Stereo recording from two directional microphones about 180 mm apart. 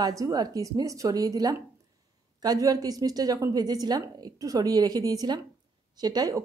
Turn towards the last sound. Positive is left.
turn(degrees=-20)  # may be behind; listen again after turning